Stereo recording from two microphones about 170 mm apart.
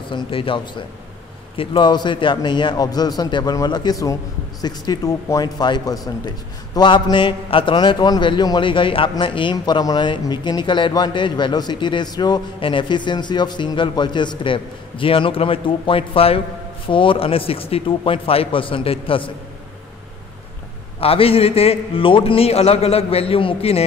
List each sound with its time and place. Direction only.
0.1 s a man's voice: 30° left (ahead or behind)
21.0 s a man's voice: 35° left (ahead or behind)